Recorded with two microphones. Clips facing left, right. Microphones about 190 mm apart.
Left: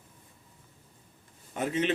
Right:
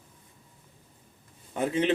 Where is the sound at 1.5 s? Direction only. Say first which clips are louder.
Right 3 dB; 30° right (ahead or behind).